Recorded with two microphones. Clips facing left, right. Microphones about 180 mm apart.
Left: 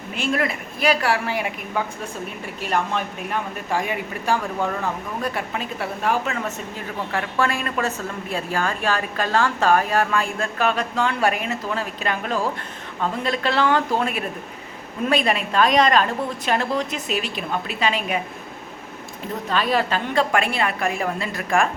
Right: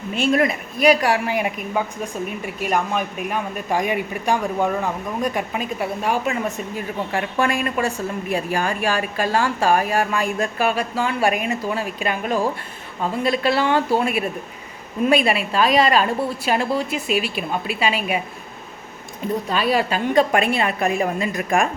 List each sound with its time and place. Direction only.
0.2 s a woman's voice: 20° right (ahead or behind)
19.5 s a woman's voice: 10° right (ahead or behind)